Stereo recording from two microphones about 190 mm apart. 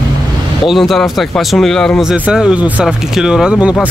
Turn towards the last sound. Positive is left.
turn(degrees=-5)  # may be behind; listen again after turning